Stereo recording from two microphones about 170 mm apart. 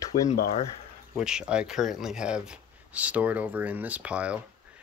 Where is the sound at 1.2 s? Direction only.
5° right (ahead or behind).